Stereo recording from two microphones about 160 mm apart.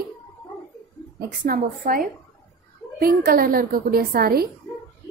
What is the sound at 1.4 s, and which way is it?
A woman's voice, 60° right (ahead or behind).